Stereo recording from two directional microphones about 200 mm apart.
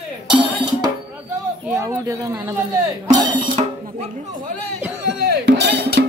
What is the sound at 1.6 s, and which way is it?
Speech, 15° right (ahead or behind).